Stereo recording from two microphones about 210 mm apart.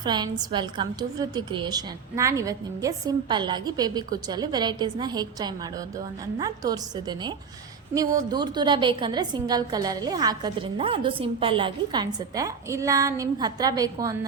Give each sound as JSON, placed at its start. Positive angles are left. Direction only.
{"t": 0.0, "sound": "a woman's voice", "side_deg": -20}